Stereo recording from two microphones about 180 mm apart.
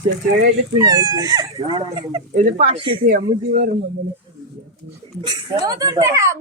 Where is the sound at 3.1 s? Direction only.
45° right (ahead or behind).